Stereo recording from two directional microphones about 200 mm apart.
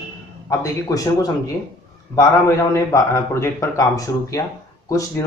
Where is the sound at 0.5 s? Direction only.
15° left (ahead or behind).